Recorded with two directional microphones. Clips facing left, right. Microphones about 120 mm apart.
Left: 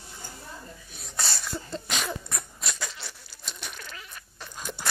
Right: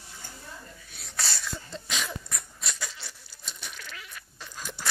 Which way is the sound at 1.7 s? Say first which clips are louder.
Left 3 dB; 55° left (ahead or behind).